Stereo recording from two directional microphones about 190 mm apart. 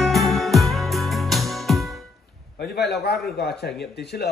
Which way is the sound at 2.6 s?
55° left (ahead or behind).